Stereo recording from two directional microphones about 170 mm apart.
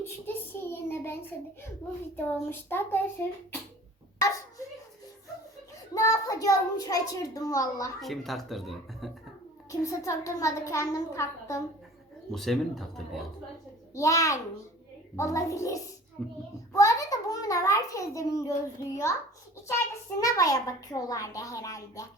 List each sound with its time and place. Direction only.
0.0 s a child's voice: 15° left (ahead or behind)
5.9 s a child's voice: 20° left (ahead or behind)
8.0 s speech: centre (ahead or behind)
9.8 s a child's voice: 15° left (ahead or behind)
12.3 s speech: centre (ahead or behind)
13.9 s a child's voice: 20° left (ahead or behind)
16.2 s speech: 5° left (ahead or behind)
16.7 s a child's voice: 20° left (ahead or behind)
20.1 s a child's voice: 20° left (ahead or behind)